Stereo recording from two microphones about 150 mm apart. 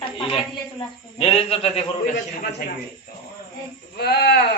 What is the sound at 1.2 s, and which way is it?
Speech, 40° left (ahead or behind).